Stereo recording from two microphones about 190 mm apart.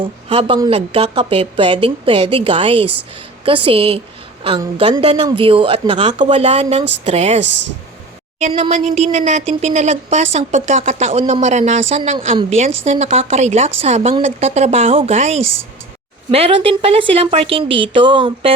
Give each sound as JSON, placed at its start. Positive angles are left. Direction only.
{"t": 0.0, "sound": "a woman's voice", "side_deg": -30}